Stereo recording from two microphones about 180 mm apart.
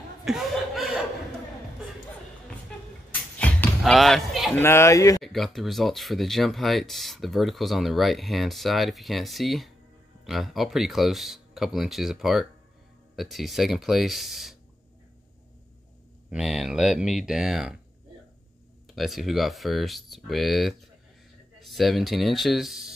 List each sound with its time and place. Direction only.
0.2 s speech: centre (ahead or behind)
3.3 s music: 5° left (ahead or behind)
4.6 s speech: 15° left (ahead or behind)
5.2 s speech: centre (ahead or behind)
16.3 s speech: centre (ahead or behind)
18.9 s speech: centre (ahead or behind)